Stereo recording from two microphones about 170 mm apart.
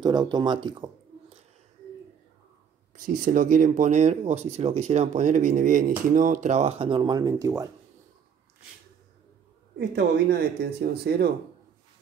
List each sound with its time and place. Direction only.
0.0 s speech: 25° right (ahead or behind)
3.1 s speech: 55° right (ahead or behind); by 7.6 s 20° right (ahead or behind)
9.8 s speech: 85° right; by 11.3 s 65° right (ahead or behind)